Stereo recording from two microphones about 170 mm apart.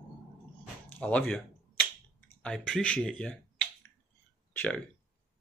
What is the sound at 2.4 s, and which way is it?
Speech, 5° left (ahead or behind).